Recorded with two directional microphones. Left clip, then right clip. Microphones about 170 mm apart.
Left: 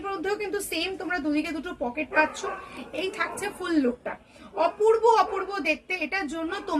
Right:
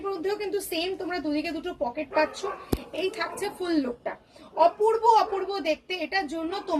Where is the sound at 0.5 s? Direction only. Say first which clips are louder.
Even; 15° left (ahead or behind).